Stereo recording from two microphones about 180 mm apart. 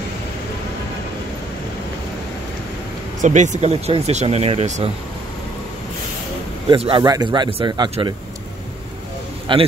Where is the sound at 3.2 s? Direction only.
40° right (ahead or behind).